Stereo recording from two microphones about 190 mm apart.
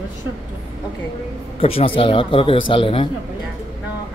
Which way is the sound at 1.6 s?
30° left (ahead or behind).